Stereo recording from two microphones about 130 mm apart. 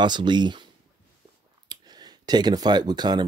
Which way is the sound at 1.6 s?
30° right (ahead or behind).